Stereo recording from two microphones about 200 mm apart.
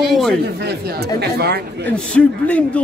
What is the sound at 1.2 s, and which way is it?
Speech, 55° right (ahead or behind).